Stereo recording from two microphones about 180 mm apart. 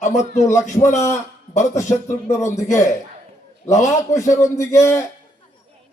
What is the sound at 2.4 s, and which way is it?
A man's voice, 40° left (ahead or behind).